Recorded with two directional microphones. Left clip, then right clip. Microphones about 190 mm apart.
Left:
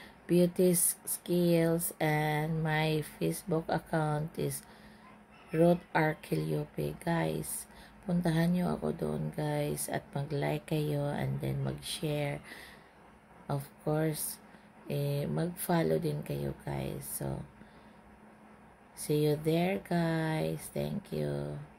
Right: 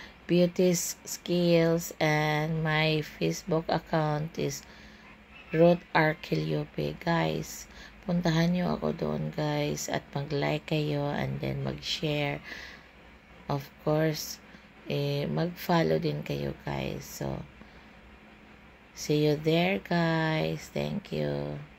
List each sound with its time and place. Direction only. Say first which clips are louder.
0.3 s speech: right 3 dB; 5° left (ahead or behind)
19.0 s speech: right 4 dB; centre (ahead or behind)